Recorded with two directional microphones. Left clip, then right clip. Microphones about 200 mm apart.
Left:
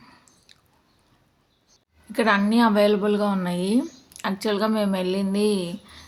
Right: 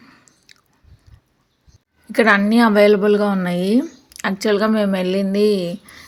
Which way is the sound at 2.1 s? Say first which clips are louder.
Right 6 dB; 25° right (ahead or behind).